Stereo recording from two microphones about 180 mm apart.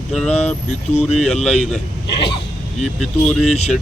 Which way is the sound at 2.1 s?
25° left (ahead or behind).